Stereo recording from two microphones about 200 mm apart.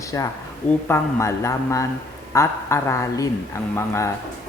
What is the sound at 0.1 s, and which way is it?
Speech, 15° left (ahead or behind).